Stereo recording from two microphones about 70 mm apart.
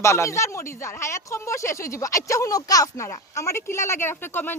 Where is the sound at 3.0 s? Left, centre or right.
Left.